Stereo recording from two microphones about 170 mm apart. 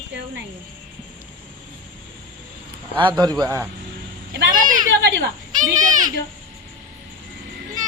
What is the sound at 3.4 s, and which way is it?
Speech, 15° right (ahead or behind).